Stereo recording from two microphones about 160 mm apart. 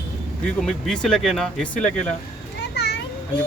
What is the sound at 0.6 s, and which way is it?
Speech, centre (ahead or behind).